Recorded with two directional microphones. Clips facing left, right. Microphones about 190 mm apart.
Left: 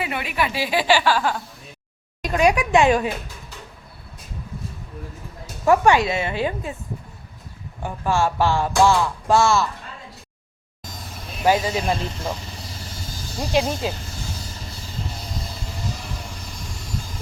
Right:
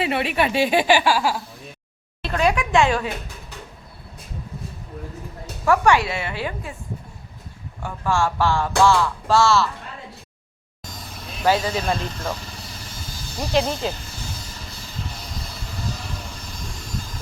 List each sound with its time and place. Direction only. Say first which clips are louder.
0.0 s speech: right 4 dB; 30° right (ahead or behind); by 1.4 s 10° right (ahead or behind)
2.2 s speech: left 2 dB; 15° left (ahead or behind)
5.6 s a woman's voice: left 2 dB; 20° left (ahead or behind)
7.8 s speech: left 1 dB; 20° left (ahead or behind)
11.4 s speech: left 1 dB; 15° left (ahead or behind)
13.5 s speech: even; 15° left (ahead or behind)